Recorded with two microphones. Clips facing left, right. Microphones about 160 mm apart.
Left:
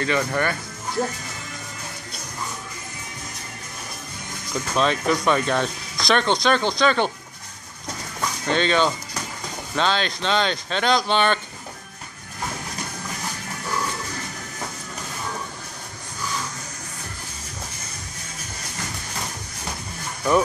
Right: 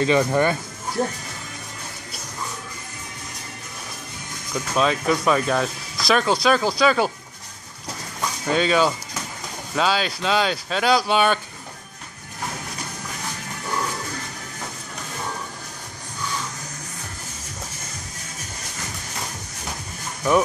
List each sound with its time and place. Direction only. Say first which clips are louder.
0.0 s speech: right 4 dB; 20° right (ahead or behind)
4.7 s speech: right 1 dB; 5° right (ahead or behind)
8.5 s speech: right 1 dB; 5° right (ahead or behind)